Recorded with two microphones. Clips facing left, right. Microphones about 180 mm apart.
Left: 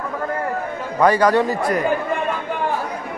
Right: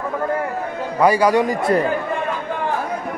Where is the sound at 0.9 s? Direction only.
10° right (ahead or behind).